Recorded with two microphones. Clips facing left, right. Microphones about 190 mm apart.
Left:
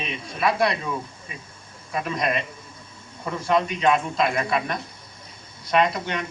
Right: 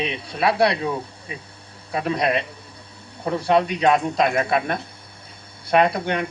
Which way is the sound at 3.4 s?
65° right (ahead or behind).